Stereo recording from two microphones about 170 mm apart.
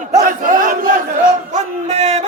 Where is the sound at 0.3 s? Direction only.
50° right (ahead or behind).